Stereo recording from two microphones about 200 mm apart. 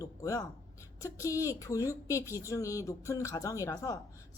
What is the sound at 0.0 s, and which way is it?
Speech, 15° left (ahead or behind).